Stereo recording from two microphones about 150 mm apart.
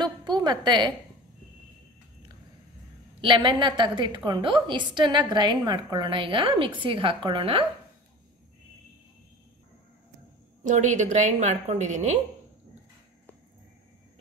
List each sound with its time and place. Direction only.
0.0 s a woman's voice: 30° right (ahead or behind)
3.2 s a woman's voice: 35° right (ahead or behind)
10.6 s a woman's voice: 55° right (ahead or behind)